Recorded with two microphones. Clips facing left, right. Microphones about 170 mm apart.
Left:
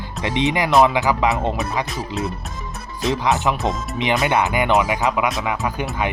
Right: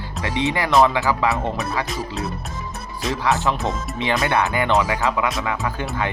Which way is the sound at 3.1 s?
20° left (ahead or behind).